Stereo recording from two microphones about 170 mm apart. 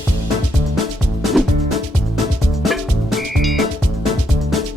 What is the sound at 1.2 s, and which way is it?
Music, centre (ahead or behind).